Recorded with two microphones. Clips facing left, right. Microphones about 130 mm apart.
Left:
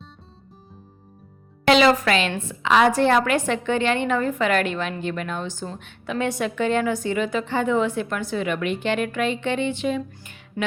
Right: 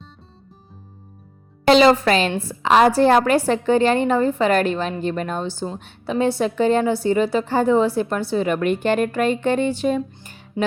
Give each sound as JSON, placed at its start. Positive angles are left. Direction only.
{"t": 1.6, "sound": "a woman's voice", "side_deg": -35}
{"t": 10.6, "sound": "music", "side_deg": -20}